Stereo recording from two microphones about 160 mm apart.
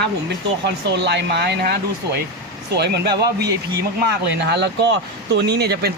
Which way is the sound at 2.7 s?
90° right.